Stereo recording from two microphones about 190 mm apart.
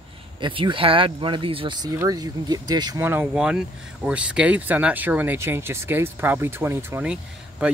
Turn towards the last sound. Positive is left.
turn(degrees=-5)  # may be behind; listen again after turning